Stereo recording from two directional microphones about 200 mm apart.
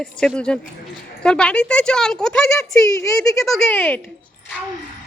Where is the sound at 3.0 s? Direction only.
15° left (ahead or behind).